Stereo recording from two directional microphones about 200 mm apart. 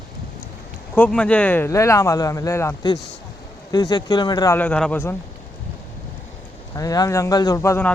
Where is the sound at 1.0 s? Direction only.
5° left (ahead or behind).